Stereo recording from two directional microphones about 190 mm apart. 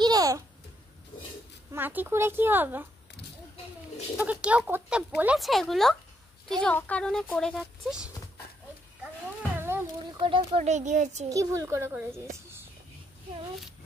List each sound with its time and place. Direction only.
0.0 s babbling: 20° right (ahead or behind)
1.7 s speech: 10° right (ahead or behind)
4.2 s speech: 5° right (ahead or behind)
9.6 s a sound: 10° right (ahead or behind)
10.2 s speech: 30° right (ahead or behind)
11.2 s speech: 15° right (ahead or behind)